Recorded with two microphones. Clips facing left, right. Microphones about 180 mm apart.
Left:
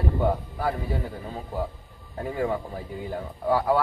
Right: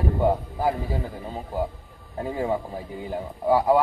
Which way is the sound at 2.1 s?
20° right (ahead or behind).